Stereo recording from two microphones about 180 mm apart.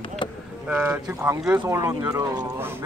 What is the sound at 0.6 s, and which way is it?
Speech, 5° right (ahead or behind).